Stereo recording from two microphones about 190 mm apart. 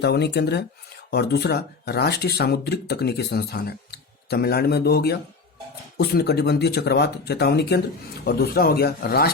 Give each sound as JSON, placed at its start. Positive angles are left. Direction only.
{"t": 0.0, "sound": "speech", "side_deg": 60}